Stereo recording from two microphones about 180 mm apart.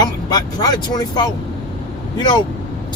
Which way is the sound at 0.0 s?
20° left (ahead or behind).